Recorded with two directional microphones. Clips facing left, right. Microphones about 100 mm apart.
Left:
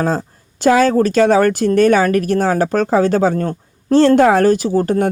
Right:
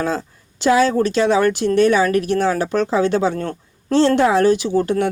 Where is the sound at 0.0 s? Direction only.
40° left (ahead or behind).